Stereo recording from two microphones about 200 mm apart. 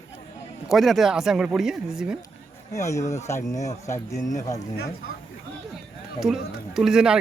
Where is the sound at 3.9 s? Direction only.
40° left (ahead or behind).